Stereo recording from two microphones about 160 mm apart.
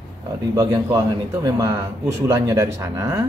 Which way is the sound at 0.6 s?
20° right (ahead or behind).